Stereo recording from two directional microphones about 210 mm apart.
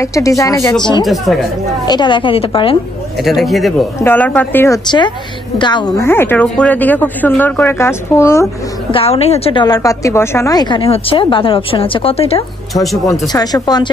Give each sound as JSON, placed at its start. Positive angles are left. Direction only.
{"t": 0.0, "sound": "speech", "side_deg": 15}
{"t": 1.0, "sound": "speech", "side_deg": 0}
{"t": 1.9, "sound": "a woman's voice", "side_deg": 20}
{"t": 3.2, "sound": "speech", "side_deg": 0}
{"t": 4.8, "sound": "a woman's voice", "side_deg": 20}
{"t": 8.9, "sound": "a woman's voice", "side_deg": 30}
{"t": 12.7, "sound": "speech", "side_deg": 0}
{"t": 13.0, "sound": "speech", "side_deg": 15}